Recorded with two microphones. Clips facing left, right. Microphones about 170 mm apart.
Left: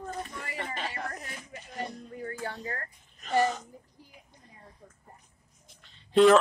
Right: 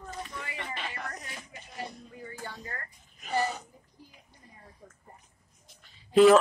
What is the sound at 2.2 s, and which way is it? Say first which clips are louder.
Music: left 6 dB; 65° left (ahead or behind).